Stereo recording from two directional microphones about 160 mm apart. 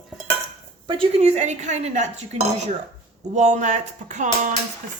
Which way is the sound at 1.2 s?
45° right (ahead or behind).